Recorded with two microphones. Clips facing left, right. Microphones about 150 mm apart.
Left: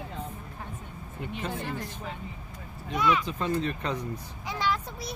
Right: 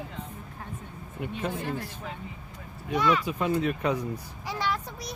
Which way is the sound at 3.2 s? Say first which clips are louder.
Right 2 dB; 10° right (ahead or behind).